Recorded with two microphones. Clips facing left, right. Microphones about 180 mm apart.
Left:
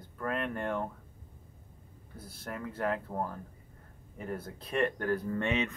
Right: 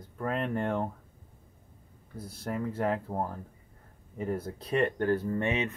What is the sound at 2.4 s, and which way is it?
Speech, 30° right (ahead or behind).